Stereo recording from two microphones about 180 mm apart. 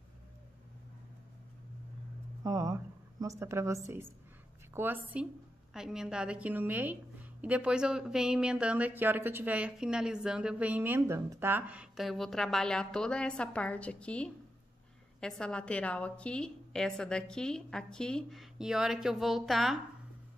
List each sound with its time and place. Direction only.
2.4 s a woman's voice: 20° right (ahead or behind); by 19.8 s centre (ahead or behind)